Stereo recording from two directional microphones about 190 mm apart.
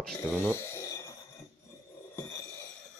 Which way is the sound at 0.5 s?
15° left (ahead or behind).